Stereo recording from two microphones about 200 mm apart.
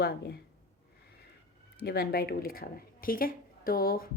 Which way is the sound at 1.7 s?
50° left (ahead or behind).